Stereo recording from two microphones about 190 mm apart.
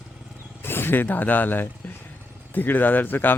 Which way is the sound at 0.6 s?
10° left (ahead or behind).